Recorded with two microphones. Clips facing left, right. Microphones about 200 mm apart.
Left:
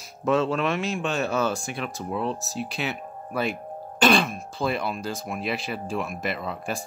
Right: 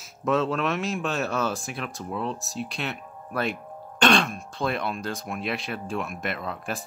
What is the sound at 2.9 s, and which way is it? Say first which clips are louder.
Music: left 4 dB; 40° left (ahead or behind).